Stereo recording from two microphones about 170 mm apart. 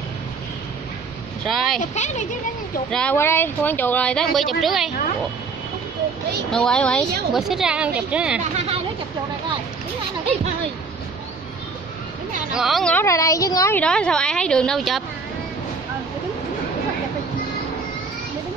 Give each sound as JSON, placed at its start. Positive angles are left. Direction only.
{"t": 1.4, "sound": "speech", "side_deg": 0}
{"t": 1.8, "sound": "speech", "side_deg": 45}
{"t": 2.9, "sound": "speech", "side_deg": 5}
{"t": 6.5, "sound": "speech", "side_deg": 5}
{"t": 8.5, "sound": "speech", "side_deg": -35}
{"t": 12.5, "sound": "speech", "side_deg": 0}
{"t": 12.9, "sound": "a child's voice", "side_deg": 20}
{"t": 13.7, "sound": "speech", "side_deg": 5}